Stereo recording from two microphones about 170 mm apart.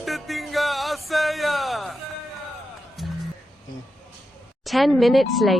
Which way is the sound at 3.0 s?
Centre (ahead or behind).